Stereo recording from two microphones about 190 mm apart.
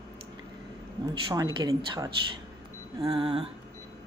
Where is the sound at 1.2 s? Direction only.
25° right (ahead or behind).